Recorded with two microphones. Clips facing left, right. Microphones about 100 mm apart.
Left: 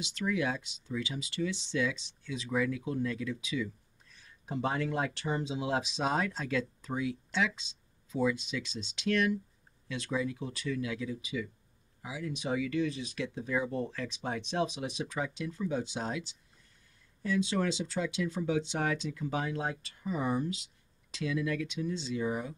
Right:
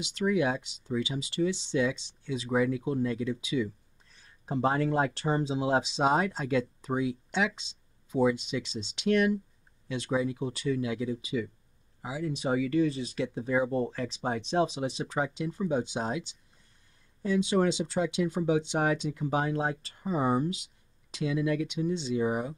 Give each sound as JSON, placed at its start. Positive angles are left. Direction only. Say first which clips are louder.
{"t": 0.1, "sound": "speech", "louder": "right 5 dB", "side_deg": -25}